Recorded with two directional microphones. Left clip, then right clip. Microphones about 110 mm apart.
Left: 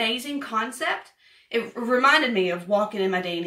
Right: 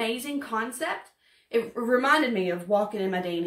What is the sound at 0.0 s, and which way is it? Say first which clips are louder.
Speech: left 4 dB; 30° right (ahead or behind).